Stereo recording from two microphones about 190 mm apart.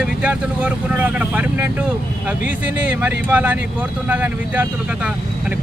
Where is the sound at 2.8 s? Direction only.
10° right (ahead or behind).